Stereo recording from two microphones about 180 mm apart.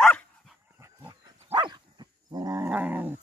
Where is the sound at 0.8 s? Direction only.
20° right (ahead or behind).